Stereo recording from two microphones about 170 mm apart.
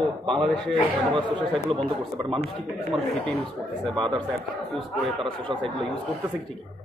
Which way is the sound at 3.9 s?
25° right (ahead or behind).